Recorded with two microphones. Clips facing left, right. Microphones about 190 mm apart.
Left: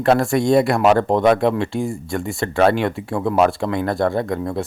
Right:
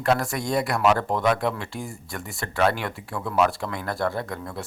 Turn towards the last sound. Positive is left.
turn(degrees=20)  # may be behind; listen again after turning